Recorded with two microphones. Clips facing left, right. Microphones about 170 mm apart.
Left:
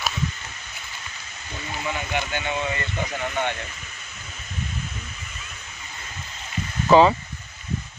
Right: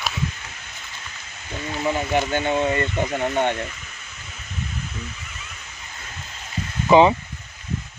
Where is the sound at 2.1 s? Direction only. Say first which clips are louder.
Right 6 dB; 40° right (ahead or behind).